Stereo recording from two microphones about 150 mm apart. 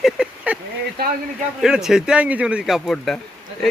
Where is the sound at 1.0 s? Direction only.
90° right.